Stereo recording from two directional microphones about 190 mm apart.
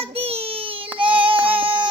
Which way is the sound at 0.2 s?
30° right (ahead or behind).